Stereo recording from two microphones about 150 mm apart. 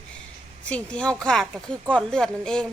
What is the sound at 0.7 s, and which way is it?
Speech, 5° left (ahead or behind).